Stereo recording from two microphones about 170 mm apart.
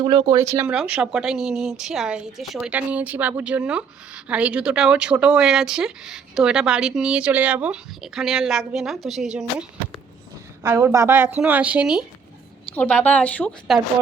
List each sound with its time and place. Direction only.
0.0 s a woman's voice: 25° right (ahead or behind); by 9.6 s 5° right (ahead or behind)
10.6 s a woman's voice: 15° right (ahead or behind)
12.7 s a woman's voice: 10° left (ahead or behind)